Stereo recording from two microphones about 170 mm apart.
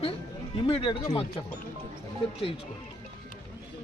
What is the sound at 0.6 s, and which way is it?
Speech, 30° left (ahead or behind).